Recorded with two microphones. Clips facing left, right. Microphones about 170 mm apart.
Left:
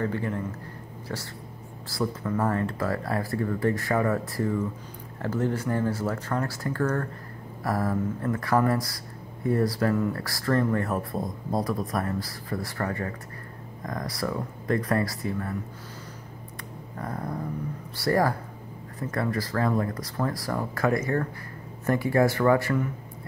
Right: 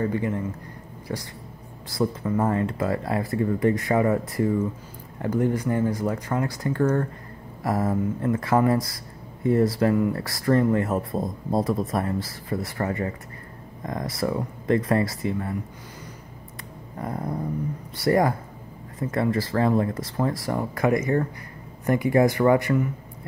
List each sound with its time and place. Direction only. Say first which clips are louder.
0.0 s speech: right 3 dB; 15° right (ahead or behind)
17.0 s speech: right 3 dB; 20° right (ahead or behind)